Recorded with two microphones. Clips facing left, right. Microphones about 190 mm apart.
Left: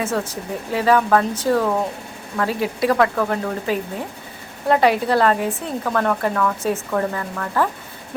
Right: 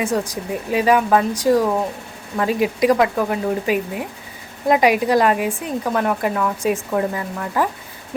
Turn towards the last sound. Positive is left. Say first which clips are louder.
# even
turn(degrees=-15)  # may be behind; listen again after turning